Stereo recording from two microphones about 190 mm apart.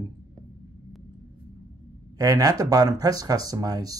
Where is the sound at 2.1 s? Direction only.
20° right (ahead or behind).